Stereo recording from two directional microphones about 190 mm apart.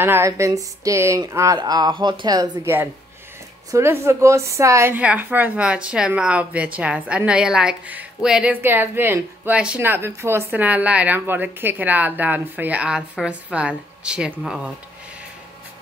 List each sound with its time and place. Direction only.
0.0 s a woman's voice: 15° right (ahead or behind)